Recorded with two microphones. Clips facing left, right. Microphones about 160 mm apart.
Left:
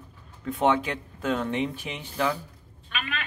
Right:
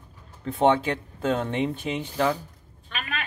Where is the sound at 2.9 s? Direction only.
40° right (ahead or behind).